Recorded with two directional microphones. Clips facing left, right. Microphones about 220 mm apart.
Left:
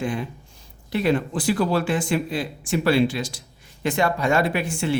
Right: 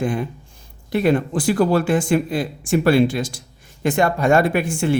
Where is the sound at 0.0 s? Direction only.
50° right (ahead or behind).